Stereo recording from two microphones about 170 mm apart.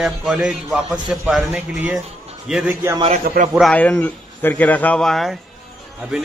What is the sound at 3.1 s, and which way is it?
Speech, 50° right (ahead or behind).